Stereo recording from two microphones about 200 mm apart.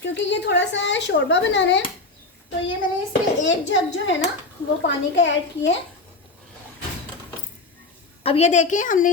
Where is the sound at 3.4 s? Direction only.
65° left (ahead or behind).